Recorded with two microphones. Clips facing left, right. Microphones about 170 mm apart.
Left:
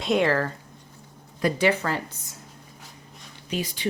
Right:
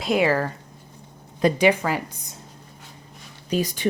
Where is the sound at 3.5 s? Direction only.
40° right (ahead or behind).